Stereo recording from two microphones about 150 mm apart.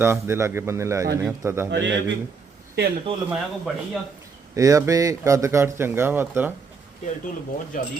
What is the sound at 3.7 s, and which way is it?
Speech, 5° right (ahead or behind).